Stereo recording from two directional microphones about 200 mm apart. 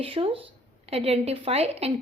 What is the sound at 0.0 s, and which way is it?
A woman's voice, 30° right (ahead or behind).